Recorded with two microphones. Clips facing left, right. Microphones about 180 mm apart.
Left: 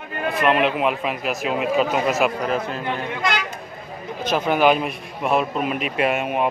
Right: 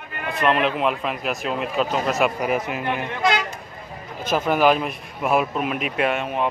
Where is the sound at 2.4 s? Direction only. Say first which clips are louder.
Even; 15° right (ahead or behind).